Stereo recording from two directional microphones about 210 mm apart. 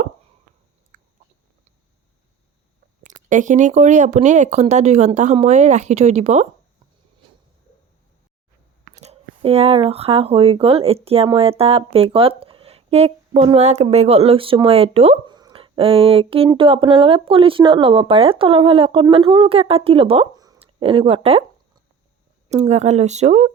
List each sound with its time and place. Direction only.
3.0 s speech: 35° right (ahead or behind)
9.0 s speech: 30° right (ahead or behind)
22.4 s speech: 30° right (ahead or behind)